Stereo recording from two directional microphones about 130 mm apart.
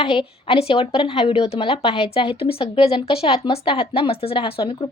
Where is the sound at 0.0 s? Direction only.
45° left (ahead or behind).